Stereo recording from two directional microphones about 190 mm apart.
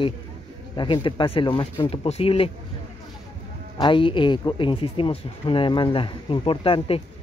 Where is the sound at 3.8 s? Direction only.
25° left (ahead or behind).